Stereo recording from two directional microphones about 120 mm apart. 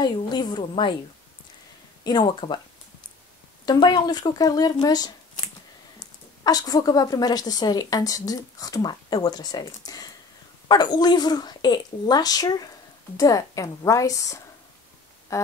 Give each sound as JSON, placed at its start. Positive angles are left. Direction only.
{"t": 0.0, "sound": "a woman's voice", "side_deg": 35}
{"t": 2.0, "sound": "a woman's voice", "side_deg": 35}
{"t": 3.6, "sound": "a woman's voice", "side_deg": 35}
{"t": 15.3, "sound": "a sound", "side_deg": 25}